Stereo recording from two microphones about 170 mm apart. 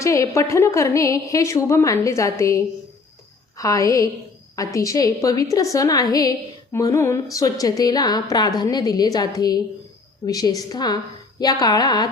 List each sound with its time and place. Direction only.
0.0 s a woman's voice: 20° left (ahead or behind)